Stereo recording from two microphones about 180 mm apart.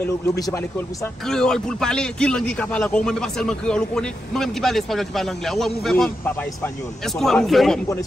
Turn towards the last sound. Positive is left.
turn(degrees=0)  # may be behind; listen again after turning